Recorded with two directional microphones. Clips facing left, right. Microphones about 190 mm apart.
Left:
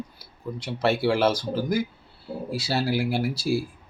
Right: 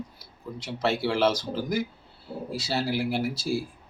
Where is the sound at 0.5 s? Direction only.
Centre (ahead or behind).